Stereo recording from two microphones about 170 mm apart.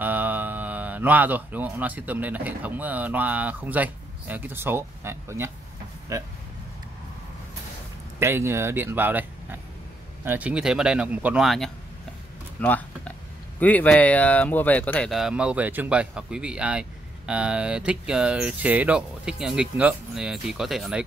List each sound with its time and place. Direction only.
0.0 s speech: 10° right (ahead or behind)
8.2 s speech: 15° right (ahead or behind)
12.5 s a sound: 10° left (ahead or behind)
13.6 s speech: 10° left (ahead or behind)